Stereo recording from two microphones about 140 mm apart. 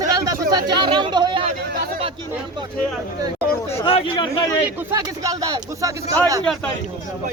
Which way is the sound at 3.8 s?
40° left (ahead or behind).